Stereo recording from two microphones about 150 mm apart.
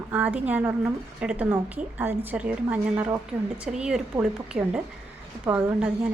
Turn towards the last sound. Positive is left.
turn(degrees=-5)  # may be behind; listen again after turning